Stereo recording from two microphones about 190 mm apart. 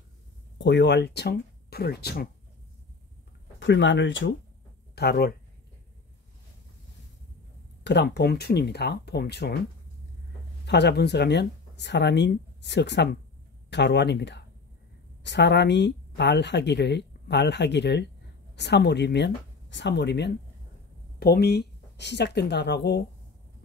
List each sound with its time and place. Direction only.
0.6 s speech: 65° left (ahead or behind)
3.5 s speech: 70° left (ahead or behind)
4.9 s speech: 55° left (ahead or behind)
7.8 s speech: 65° left (ahead or behind)
10.6 s speech: 60° left (ahead or behind)